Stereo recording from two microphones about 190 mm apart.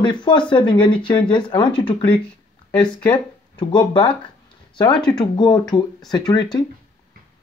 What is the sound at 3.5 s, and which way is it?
Speech, 25° left (ahead or behind).